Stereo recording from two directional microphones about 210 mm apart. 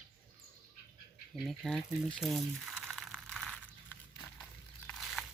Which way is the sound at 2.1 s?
Centre (ahead or behind).